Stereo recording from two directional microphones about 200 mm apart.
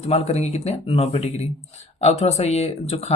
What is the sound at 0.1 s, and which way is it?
Speech, 30° left (ahead or behind).